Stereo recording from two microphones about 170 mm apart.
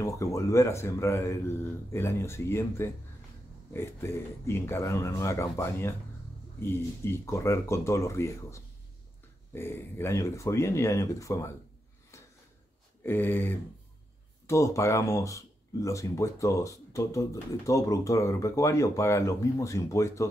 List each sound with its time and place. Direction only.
0.0 s speech: 20° left (ahead or behind)
13.0 s speech: 10° left (ahead or behind)